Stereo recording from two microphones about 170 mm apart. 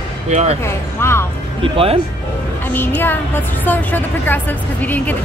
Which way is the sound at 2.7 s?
10° left (ahead or behind).